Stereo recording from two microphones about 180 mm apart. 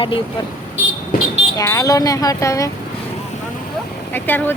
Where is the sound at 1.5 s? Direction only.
15° left (ahead or behind).